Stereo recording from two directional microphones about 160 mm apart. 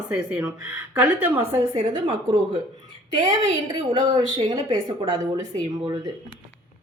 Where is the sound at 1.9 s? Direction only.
30° right (ahead or behind).